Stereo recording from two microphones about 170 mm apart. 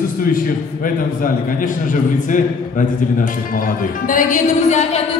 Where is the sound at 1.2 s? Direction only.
50° left (ahead or behind).